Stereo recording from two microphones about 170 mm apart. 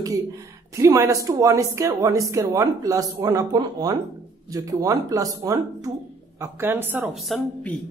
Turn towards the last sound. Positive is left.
turn(degrees=5)  # may be behind; listen again after turning